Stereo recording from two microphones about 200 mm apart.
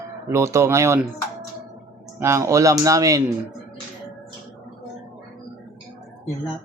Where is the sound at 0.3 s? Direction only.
15° right (ahead or behind).